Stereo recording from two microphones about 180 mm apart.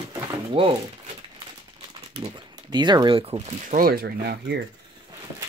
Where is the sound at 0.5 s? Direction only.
30° right (ahead or behind).